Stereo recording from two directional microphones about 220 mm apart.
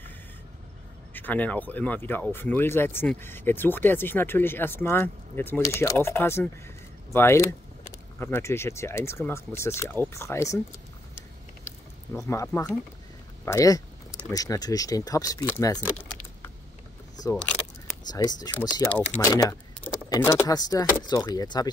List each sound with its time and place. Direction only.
1.1 s speech: 10° left (ahead or behind)
11.6 s a sound: centre (ahead or behind)
12.3 s speech: 10° left (ahead or behind)
18.0 s speech: 20° left (ahead or behind)